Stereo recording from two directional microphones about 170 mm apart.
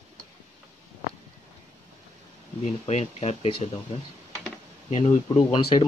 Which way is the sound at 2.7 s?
40° left (ahead or behind).